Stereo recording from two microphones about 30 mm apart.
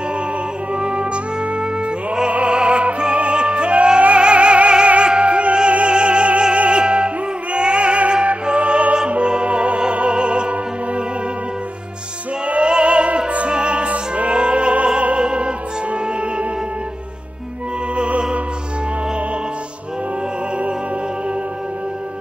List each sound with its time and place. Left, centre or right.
0.7 s music: right
12.4 s music: right
17.9 s music: right